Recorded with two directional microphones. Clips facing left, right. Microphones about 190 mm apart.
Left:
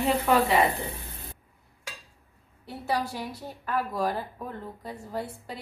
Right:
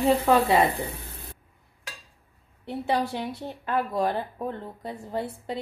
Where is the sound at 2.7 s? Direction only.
25° right (ahead or behind).